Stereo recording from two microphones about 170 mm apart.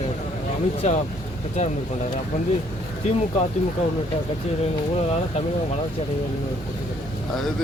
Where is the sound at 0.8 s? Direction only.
40° left (ahead or behind).